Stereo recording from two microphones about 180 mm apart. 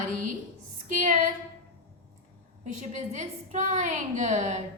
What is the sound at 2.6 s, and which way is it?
A woman's voice, 40° right (ahead or behind).